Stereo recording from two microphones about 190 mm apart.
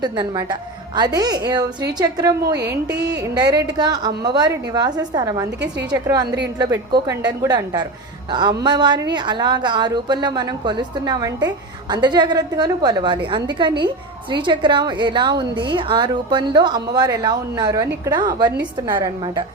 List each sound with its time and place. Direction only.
0.0 s a woman's voice: 20° right (ahead or behind)
2.6 s a woman's voice: 60° right (ahead or behind)
3.2 s a woman's voice: 20° right (ahead or behind)
5.5 s a woman's voice: 65° right (ahead or behind)
5.9 s a woman's voice: 20° right (ahead or behind)
6.2 s a woman's voice: 65° right (ahead or behind)
6.6 s a woman's voice: 20° right (ahead or behind)